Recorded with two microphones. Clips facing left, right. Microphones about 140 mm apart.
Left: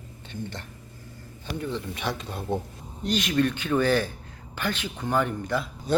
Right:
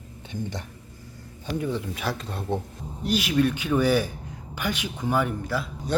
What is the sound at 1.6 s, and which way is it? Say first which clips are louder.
Speech: right 1 dB; 5° right (ahead or behind).